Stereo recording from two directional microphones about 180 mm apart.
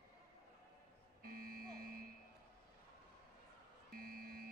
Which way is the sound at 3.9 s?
55° right (ahead or behind).